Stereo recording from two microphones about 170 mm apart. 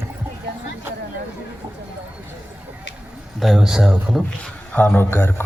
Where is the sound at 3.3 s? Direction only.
Centre (ahead or behind).